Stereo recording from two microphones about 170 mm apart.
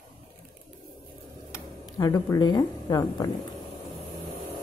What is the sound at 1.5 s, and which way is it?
Tick-tock, 20° left (ahead or behind).